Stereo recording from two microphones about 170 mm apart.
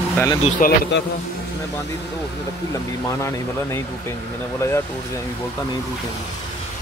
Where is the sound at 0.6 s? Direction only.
50° left (ahead or behind).